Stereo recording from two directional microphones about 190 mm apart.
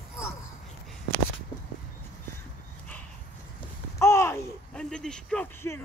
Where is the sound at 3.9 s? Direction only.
15° left (ahead or behind).